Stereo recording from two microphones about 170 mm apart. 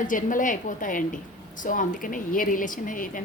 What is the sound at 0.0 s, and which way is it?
A woman's voice, 50° left (ahead or behind).